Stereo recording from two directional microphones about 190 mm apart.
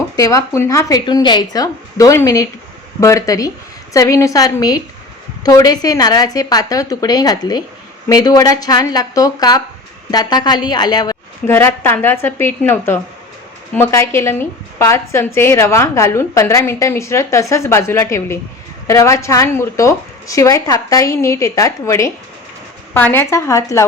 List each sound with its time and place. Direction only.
0.2 s a woman's voice: 15° left (ahead or behind)